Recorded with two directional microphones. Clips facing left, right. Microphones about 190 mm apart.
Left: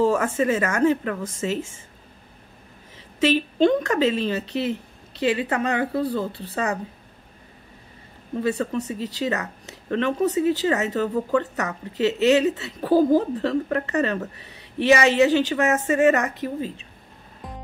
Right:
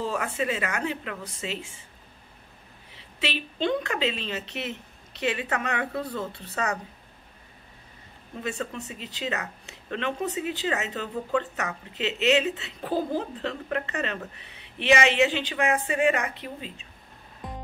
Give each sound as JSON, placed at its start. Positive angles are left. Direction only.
{"t": 0.0, "sound": "speech", "side_deg": 45}
{"t": 3.2, "sound": "speech", "side_deg": 45}
{"t": 8.4, "sound": "speech", "side_deg": 40}
{"t": 17.4, "sound": "music", "side_deg": 0}